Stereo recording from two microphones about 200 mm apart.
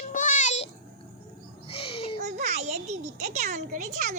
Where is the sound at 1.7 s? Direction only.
30° left (ahead or behind).